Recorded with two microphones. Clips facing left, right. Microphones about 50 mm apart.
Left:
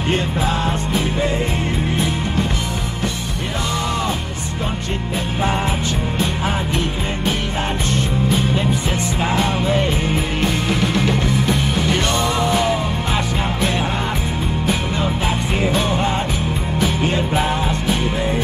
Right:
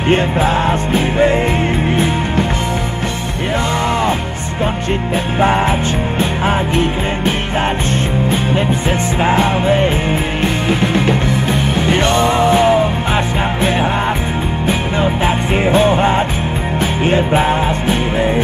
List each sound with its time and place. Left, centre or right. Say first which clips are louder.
0.1 s music: right 7 dB; right
5.4 s music: right 7 dB; right
9.2 s music: right 6 dB; right